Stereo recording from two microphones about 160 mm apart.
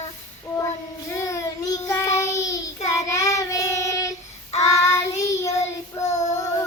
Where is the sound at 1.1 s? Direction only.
20° left (ahead or behind).